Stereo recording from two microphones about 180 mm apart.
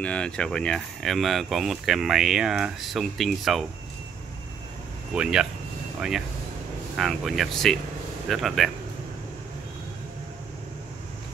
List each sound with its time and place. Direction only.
0.0 s speech: 5° left (ahead or behind)
5.1 s speech: 5° right (ahead or behind)